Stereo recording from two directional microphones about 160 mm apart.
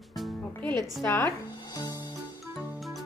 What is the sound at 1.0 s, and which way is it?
Speech, 10° left (ahead or behind).